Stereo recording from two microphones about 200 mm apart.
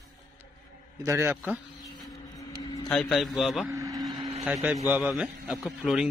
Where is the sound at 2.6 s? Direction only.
20° left (ahead or behind).